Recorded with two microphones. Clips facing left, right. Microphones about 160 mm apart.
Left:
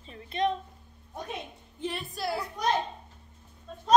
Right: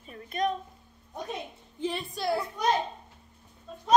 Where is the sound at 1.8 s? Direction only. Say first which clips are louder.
Right 3 dB; centre (ahead or behind).